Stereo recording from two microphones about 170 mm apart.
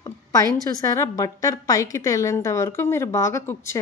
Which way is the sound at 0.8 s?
20° left (ahead or behind).